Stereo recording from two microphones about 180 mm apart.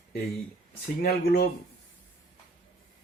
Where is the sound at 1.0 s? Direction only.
60° left (ahead or behind).